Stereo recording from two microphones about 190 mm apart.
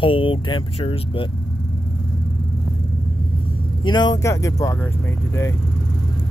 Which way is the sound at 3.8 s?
20° left (ahead or behind).